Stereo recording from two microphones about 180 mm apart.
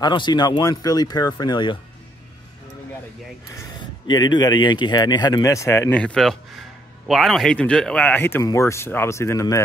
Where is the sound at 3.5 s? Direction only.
25° left (ahead or behind).